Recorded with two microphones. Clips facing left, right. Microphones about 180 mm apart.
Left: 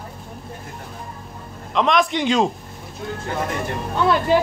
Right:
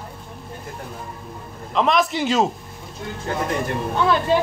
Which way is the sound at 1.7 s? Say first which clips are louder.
Left 1 dB; 5° right (ahead or behind).